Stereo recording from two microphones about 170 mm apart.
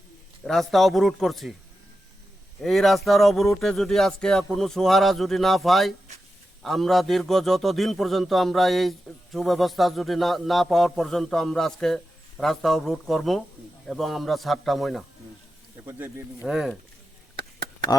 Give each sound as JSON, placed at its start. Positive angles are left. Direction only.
{"t": 0.4, "sound": "a man's voice", "side_deg": 0}
{"t": 2.6, "sound": "a man's voice", "side_deg": 0}
{"t": 15.9, "sound": "speech", "side_deg": -15}
{"t": 16.5, "sound": "a man's voice", "side_deg": -5}
{"t": 17.3, "sound": "a sound", "side_deg": -65}